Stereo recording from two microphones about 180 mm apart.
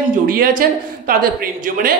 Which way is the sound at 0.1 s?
50° right (ahead or behind).